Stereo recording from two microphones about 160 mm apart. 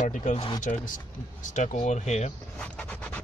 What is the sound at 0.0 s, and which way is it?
Speech, 50° left (ahead or behind).